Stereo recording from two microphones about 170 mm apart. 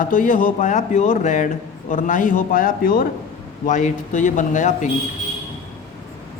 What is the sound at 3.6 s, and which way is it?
A man's voice, 45° left (ahead or behind).